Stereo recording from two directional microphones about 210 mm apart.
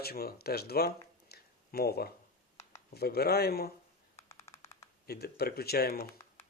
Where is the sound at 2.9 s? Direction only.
50° left (ahead or behind).